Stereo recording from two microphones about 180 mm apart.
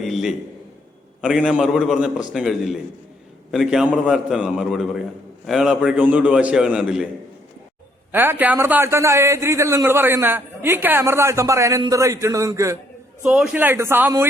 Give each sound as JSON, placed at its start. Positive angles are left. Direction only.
{"t": 0.0, "sound": "a sound", "side_deg": 0}
{"t": 1.2, "sound": "a man's voice", "side_deg": -5}
{"t": 8.1, "sound": "a man's voice", "side_deg": -10}
{"t": 13.2, "sound": "a man's voice", "side_deg": 0}